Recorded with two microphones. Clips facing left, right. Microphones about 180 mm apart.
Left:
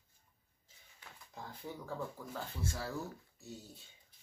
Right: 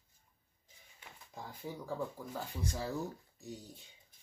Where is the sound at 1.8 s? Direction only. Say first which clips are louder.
Right 3 dB; 15° right (ahead or behind).